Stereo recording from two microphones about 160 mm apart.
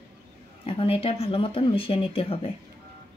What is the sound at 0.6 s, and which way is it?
Speech, 35° left (ahead or behind).